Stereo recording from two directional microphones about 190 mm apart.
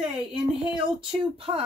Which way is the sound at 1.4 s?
30° right (ahead or behind).